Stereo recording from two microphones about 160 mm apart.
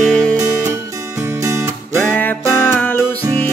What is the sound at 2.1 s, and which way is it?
Music, 10° left (ahead or behind).